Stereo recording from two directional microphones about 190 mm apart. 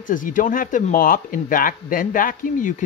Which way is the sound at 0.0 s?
45° left (ahead or behind).